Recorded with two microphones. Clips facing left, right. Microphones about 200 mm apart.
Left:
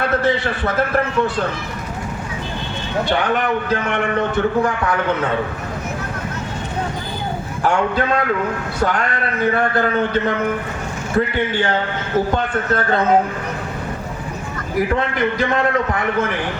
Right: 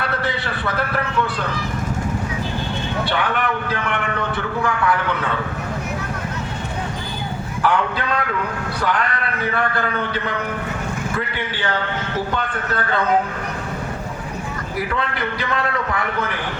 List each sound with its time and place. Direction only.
0.6 s a man's voice: 45° left (ahead or behind)
3.1 s a man's voice: 45° left (ahead or behind)
7.6 s a man's voice: 45° left (ahead or behind)
12.3 s a man's voice: 45° left (ahead or behind)
14.8 s a man's voice: 45° left (ahead or behind)